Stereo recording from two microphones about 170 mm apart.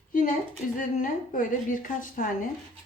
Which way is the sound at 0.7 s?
55° left (ahead or behind).